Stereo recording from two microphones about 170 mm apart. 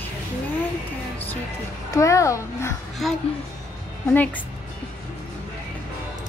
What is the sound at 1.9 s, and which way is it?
Speech, 20° left (ahead or behind).